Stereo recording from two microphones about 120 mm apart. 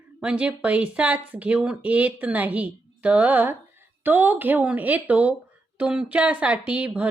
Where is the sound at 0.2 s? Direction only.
10° right (ahead or behind).